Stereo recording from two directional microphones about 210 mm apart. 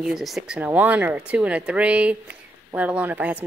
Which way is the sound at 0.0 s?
Centre (ahead or behind).